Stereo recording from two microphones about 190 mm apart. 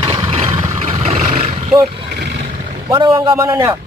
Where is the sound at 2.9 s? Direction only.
25° right (ahead or behind).